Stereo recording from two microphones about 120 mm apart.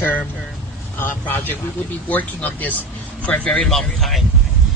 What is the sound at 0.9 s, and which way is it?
A woman's voice, 15° left (ahead or behind).